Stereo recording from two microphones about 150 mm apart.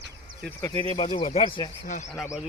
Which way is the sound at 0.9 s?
35° left (ahead or behind).